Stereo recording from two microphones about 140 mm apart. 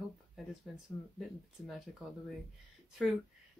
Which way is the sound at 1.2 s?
Centre (ahead or behind).